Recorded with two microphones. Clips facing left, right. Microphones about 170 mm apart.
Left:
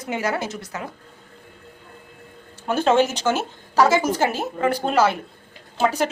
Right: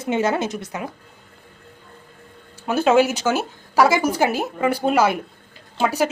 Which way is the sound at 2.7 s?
10° right (ahead or behind).